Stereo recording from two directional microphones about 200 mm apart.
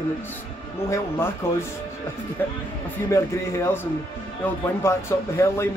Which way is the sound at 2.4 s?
10° left (ahead or behind).